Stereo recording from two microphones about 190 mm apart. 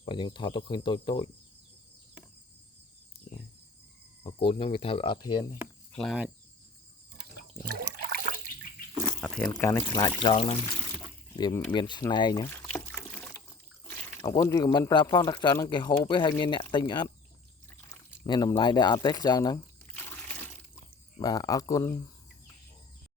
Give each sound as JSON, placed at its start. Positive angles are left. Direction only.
{"t": 0.0, "sound": "speech", "side_deg": 25}
{"t": 4.2, "sound": "speech", "side_deg": 30}
{"t": 5.9, "sound": "speech", "side_deg": 5}
{"t": 7.2, "sound": "water", "side_deg": -55}
{"t": 9.2, "sound": "water", "side_deg": -5}
{"t": 9.6, "sound": "speech", "side_deg": 15}
{"t": 10.3, "sound": "speech", "side_deg": 35}
{"t": 11.3, "sound": "speech", "side_deg": 20}
{"t": 12.5, "sound": "rowboat", "side_deg": 10}
{"t": 14.2, "sound": "speech", "side_deg": 20}
{"t": 18.3, "sound": "speech", "side_deg": 20}